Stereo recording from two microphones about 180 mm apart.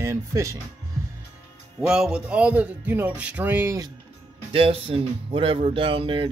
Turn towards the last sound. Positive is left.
turn(degrees=-30)  # may be behind; listen again after turning